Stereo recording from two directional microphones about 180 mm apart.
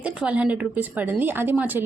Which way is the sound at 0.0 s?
5° right (ahead or behind).